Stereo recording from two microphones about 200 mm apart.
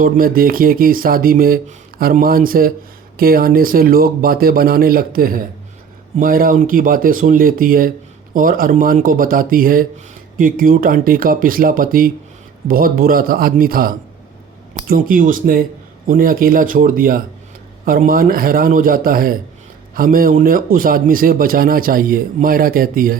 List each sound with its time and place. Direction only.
0.0 s a man's voice: 45° right (ahead or behind)